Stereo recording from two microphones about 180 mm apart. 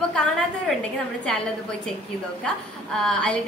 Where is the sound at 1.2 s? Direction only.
5° left (ahead or behind).